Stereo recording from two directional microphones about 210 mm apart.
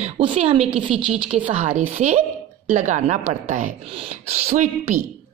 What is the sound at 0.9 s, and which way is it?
Speech, 5° right (ahead or behind).